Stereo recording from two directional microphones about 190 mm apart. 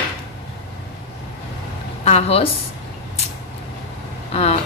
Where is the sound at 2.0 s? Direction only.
35° left (ahead or behind).